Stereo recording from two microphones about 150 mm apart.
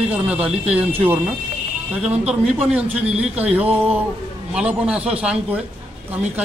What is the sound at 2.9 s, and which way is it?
Speech, 45° right (ahead or behind).